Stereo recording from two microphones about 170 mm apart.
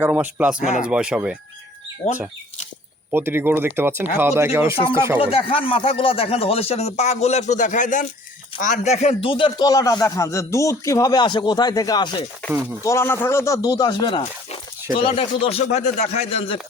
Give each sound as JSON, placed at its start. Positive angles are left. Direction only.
{"t": 0.0, "sound": "speech", "side_deg": -10}
{"t": 0.6, "sound": "speech", "side_deg": 45}
{"t": 0.9, "sound": "speech", "side_deg": -5}
{"t": 2.0, "sound": "speech", "side_deg": 35}
{"t": 3.1, "sound": "speech", "side_deg": -15}
{"t": 5.2, "sound": "a man's voice", "side_deg": 35}